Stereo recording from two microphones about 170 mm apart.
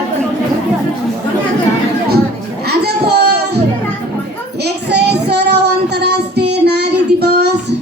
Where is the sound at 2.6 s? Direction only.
70° right (ahead or behind).